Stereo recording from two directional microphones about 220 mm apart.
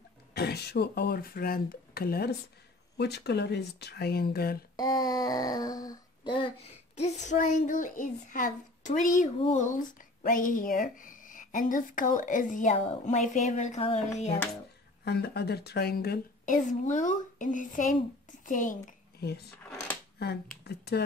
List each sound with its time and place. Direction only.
0.3 s a woman's voice: 50° left (ahead or behind)
4.7 s speech: 15° left (ahead or behind)
15.0 s a woman's voice: 45° left (ahead or behind)
19.6 s a sound: 10° left (ahead or behind)
20.6 s speech: 45° left (ahead or behind)